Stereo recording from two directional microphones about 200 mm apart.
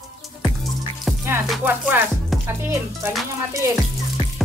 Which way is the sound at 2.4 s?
15° right (ahead or behind).